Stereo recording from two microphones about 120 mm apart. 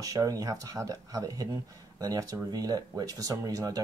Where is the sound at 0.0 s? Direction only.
30° right (ahead or behind).